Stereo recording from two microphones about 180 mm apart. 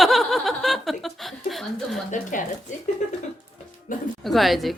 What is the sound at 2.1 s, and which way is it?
Speech, 45° left (ahead or behind).